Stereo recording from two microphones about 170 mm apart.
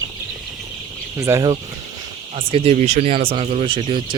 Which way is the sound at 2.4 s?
35° right (ahead or behind).